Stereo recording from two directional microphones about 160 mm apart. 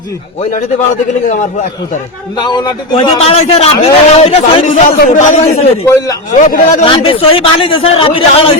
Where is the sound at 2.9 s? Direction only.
40° left (ahead or behind).